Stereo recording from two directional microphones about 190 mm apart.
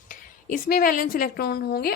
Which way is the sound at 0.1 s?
45° left (ahead or behind).